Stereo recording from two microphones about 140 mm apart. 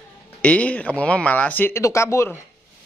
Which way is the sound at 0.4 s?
10° left (ahead or behind).